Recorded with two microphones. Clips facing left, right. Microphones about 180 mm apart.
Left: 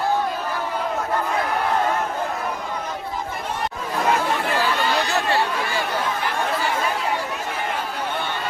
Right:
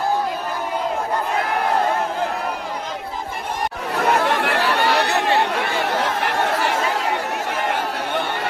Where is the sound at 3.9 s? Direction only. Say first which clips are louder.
Right 3 dB; 70° right (ahead or behind).